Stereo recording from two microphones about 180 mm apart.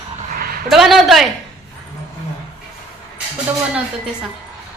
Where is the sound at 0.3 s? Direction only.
55° right (ahead or behind).